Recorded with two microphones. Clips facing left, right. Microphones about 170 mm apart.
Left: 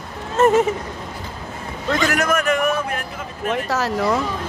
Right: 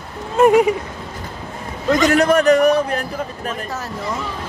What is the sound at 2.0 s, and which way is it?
A man's voice, 30° right (ahead or behind).